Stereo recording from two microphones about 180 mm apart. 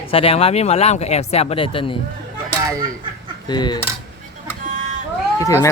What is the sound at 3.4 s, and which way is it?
Speech, 25° left (ahead or behind).